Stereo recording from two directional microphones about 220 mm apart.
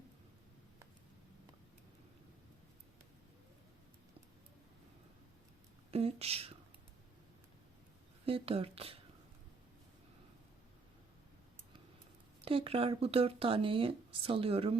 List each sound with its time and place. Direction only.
5.9 s speech: 30° right (ahead or behind)
8.2 s speech: 25° right (ahead or behind)
12.5 s speech: 25° right (ahead or behind)